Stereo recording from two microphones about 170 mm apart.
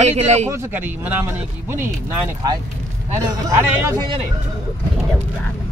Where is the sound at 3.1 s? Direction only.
15° right (ahead or behind).